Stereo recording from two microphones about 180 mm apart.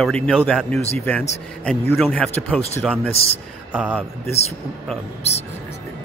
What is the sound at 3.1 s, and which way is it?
Speech, 35° left (ahead or behind).